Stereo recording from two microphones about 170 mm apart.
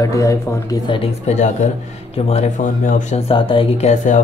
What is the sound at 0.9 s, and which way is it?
Speech, 35° left (ahead or behind).